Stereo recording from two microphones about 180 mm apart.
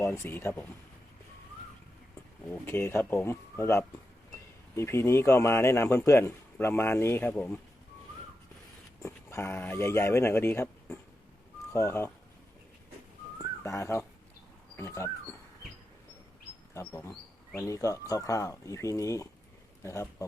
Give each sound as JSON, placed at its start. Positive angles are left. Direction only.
{"t": 0.0, "sound": "speech", "side_deg": 15}
{"t": 2.5, "sound": "speech", "side_deg": 10}
{"t": 9.0, "sound": "speech", "side_deg": 15}
{"t": 11.7, "sound": "speech", "side_deg": 15}
{"t": 13.4, "sound": "whistling", "side_deg": 15}
{"t": 14.8, "sound": "speech", "side_deg": 15}
{"t": 16.7, "sound": "speech", "side_deg": 15}